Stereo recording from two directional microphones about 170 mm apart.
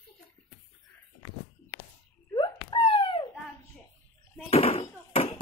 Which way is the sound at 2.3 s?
30° left (ahead or behind).